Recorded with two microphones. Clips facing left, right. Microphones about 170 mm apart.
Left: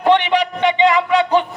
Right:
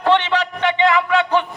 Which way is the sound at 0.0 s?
15° left (ahead or behind).